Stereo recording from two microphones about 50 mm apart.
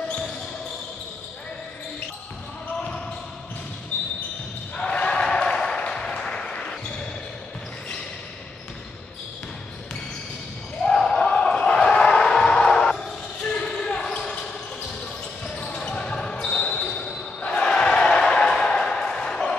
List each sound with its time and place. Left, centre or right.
3.9 s a sound: left
4.7 s basketball bounce: left
10.8 s basketball bounce: centre
12.4 s music: centre
13.5 s basketball bounce: centre
15.5 s basketball bounce: centre
17.4 s a sound: centre